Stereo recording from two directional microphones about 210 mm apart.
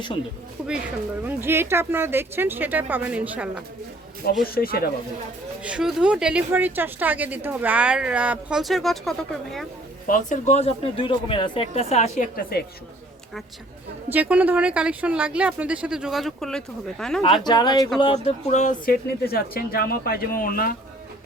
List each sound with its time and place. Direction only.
1.2 s speech: 10° right (ahead or behind)
4.5 s speech: 45° left (ahead or behind)
5.6 s a woman's voice: 5° right (ahead or behind)
10.1 s speech: 35° left (ahead or behind)
14.1 s a woman's voice: 5° right (ahead or behind)
17.2 s speech: 20° left (ahead or behind); by 20.7 s 45° left (ahead or behind)